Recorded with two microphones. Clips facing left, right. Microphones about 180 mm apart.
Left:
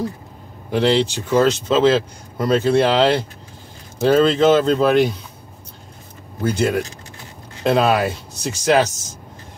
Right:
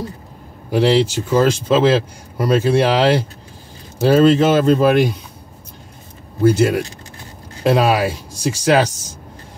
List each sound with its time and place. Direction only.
0.7 s speech: 5° right (ahead or behind)
6.4 s speech: 10° right (ahead or behind)